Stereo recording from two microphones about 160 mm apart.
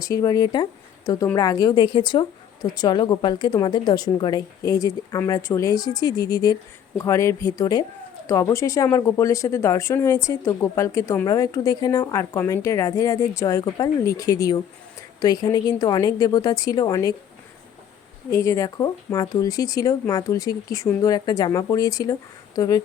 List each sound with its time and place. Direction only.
0.0 s a woman's voice: 20° left (ahead or behind)
18.3 s a woman's voice: 20° left (ahead or behind)